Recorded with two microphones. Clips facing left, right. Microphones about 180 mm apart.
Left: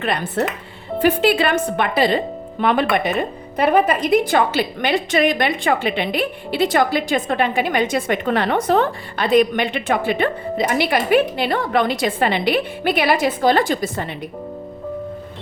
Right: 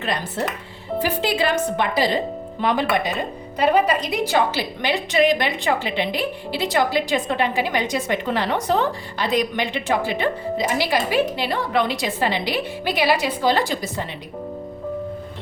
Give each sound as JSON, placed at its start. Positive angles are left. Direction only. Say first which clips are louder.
{"t": 0.0, "sound": "a woman's voice", "louder": "left 4 dB", "side_deg": 60}